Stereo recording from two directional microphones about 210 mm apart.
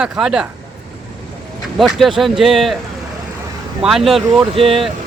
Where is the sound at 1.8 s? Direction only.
Centre (ahead or behind).